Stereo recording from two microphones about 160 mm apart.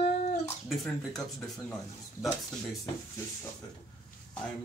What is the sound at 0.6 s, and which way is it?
Speech, centre (ahead or behind).